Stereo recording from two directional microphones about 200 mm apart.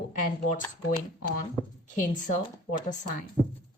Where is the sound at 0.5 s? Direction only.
40° left (ahead or behind).